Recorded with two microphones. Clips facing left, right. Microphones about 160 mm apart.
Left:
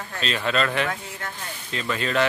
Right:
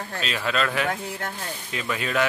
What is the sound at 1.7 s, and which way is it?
Speech, 10° right (ahead or behind).